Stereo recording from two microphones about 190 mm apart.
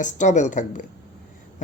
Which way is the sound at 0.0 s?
40° left (ahead or behind).